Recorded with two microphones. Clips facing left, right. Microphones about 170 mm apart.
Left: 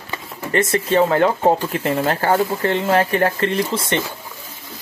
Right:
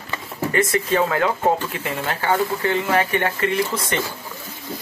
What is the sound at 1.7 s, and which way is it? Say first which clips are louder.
Speech: left 7 dB; 40° left (ahead or behind).